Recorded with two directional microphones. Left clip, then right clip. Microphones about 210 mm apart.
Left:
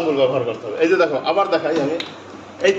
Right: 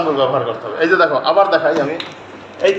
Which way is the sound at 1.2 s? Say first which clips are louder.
Right 5 dB; 20° left (ahead or behind).